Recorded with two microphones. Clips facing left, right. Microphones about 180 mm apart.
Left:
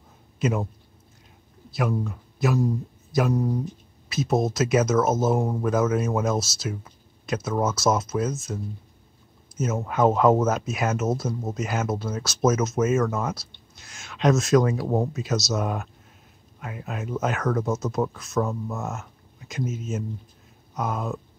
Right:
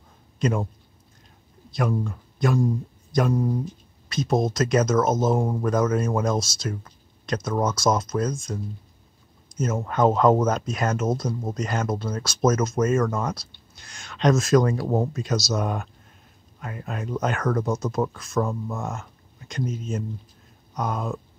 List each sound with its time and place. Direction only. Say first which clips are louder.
0.4 s speech: right 1 dB; 5° left (ahead or behind)
1.7 s speech: right 1 dB; 5° left (ahead or behind)
9.6 s speech: even; 5° left (ahead or behind)